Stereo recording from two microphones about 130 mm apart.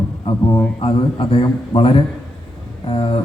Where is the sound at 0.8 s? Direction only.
40° left (ahead or behind).